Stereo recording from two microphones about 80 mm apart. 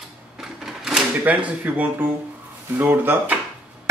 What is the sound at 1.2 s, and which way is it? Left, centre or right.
Speech, centre.